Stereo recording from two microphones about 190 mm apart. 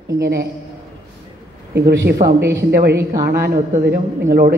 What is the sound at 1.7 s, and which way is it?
Speech, 60° right (ahead or behind).